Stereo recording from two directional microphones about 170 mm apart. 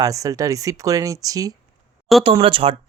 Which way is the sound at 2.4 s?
35° right (ahead or behind).